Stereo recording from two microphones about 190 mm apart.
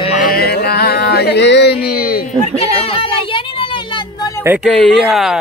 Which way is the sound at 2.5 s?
30° left (ahead or behind).